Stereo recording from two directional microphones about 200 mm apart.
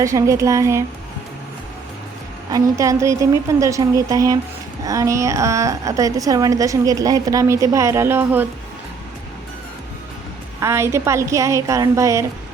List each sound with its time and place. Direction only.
0.0 s a woman's voice: 15° right (ahead or behind)
2.5 s a woman's voice: 15° right (ahead or behind)
10.6 s a woman's voice: 15° right (ahead or behind)